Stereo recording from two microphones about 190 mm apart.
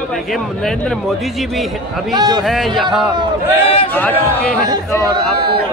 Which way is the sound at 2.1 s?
20° right (ahead or behind).